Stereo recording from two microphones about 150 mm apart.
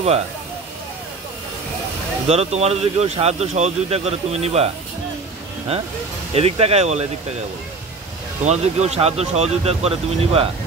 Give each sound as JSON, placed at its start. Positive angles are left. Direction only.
{"t": 2.2, "sound": "speech", "side_deg": -45}
{"t": 6.3, "sound": "speech", "side_deg": -45}
{"t": 8.5, "sound": "speech", "side_deg": -45}